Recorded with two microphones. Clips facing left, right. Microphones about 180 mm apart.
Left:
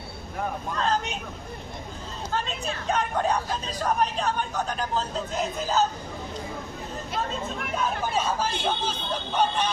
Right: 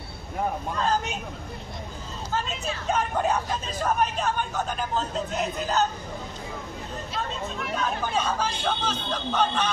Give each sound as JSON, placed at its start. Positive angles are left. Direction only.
{"t": 2.9, "sound": "speech", "side_deg": -5}
{"t": 8.1, "sound": "speech", "side_deg": 5}